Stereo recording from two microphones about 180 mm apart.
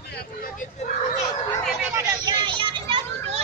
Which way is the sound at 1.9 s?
15° right (ahead or behind).